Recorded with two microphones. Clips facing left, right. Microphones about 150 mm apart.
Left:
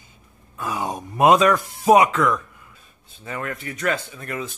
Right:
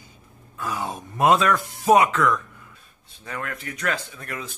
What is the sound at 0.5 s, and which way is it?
Groan, 15° left (ahead or behind).